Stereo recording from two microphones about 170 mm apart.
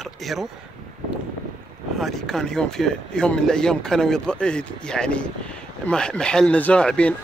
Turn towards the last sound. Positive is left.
turn(degrees=5)  # may be behind; listen again after turning